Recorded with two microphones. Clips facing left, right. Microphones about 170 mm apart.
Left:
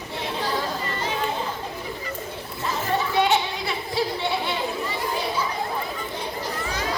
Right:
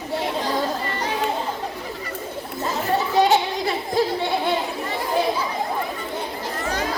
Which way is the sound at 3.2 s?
45° right (ahead or behind).